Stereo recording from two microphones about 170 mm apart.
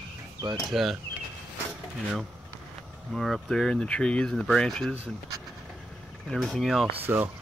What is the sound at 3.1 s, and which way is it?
Speech, centre (ahead or behind).